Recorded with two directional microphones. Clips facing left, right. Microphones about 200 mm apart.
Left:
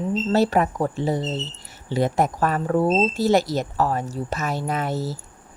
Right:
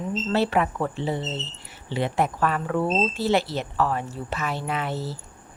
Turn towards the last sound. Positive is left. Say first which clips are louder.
# left 3 dB
turn(degrees=40)  # may be behind; listen again after turning